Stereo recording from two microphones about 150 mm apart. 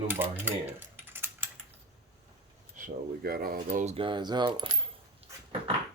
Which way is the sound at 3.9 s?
35° right (ahead or behind).